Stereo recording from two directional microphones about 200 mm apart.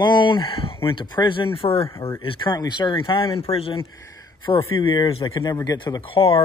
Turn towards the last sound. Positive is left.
turn(degrees=25)  # may be behind; listen again after turning